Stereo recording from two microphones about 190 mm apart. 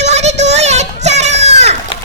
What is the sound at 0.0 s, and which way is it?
Children playing, 35° right (ahead or behind).